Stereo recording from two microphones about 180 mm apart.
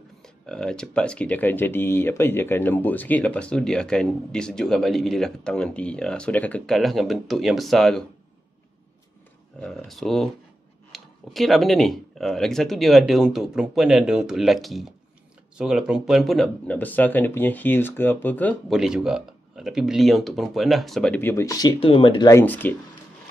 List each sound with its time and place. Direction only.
0.5 s speech: 5° left (ahead or behind)
9.8 s speech: centre (ahead or behind); by 21.7 s 20° left (ahead or behind)
21.7 s speech: 30° left (ahead or behind)
22.3 s speech: 10° left (ahead or behind)